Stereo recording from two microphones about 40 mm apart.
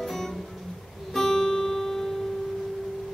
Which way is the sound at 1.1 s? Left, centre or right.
Centre.